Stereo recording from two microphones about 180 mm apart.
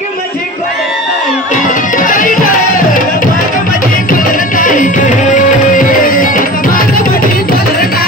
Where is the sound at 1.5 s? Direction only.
45° left (ahead or behind).